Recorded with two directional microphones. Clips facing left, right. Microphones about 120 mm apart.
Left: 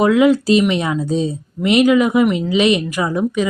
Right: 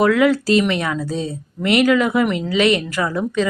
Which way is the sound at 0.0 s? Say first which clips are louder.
Left 2 dB; 20° left (ahead or behind).